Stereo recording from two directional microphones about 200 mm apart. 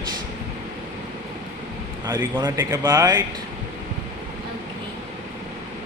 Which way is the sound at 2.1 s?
15° right (ahead or behind).